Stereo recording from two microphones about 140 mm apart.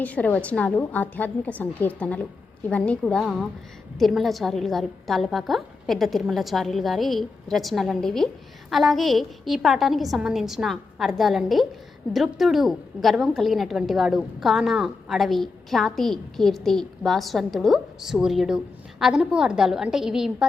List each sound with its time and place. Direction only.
0.0 s a woman's voice: 10° left (ahead or behind)